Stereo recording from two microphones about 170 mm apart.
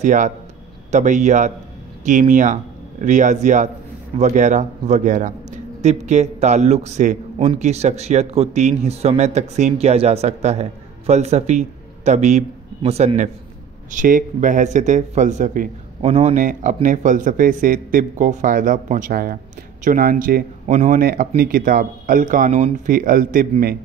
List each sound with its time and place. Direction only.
0.0 s a man's voice: 50° right (ahead or behind)